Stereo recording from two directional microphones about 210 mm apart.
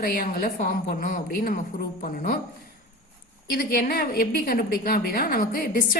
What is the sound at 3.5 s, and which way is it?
A woman's voice, 45° left (ahead or behind).